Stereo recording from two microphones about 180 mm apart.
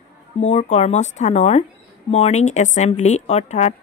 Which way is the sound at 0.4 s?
40° left (ahead or behind).